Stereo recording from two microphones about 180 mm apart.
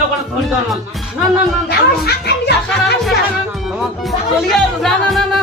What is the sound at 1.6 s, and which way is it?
Speech, 65° left (ahead or behind).